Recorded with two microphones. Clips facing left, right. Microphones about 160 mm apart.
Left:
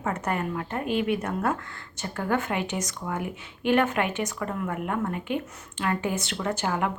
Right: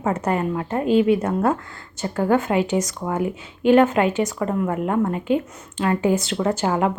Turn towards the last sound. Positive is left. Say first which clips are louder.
# right 7 dB
turn(degrees=-30)  # may be behind; listen again after turning